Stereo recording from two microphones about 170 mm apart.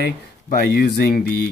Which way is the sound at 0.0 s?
65° left (ahead or behind).